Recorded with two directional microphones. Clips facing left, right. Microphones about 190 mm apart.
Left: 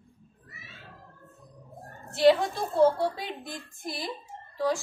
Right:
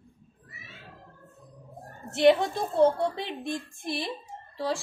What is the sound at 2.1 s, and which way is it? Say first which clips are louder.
A woman's voice: even; 20° right (ahead or behind).